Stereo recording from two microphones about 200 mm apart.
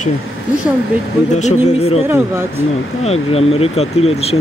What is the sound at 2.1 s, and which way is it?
Speech, 10° right (ahead or behind).